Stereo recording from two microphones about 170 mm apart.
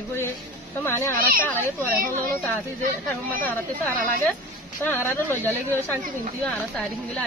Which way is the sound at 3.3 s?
10° left (ahead or behind).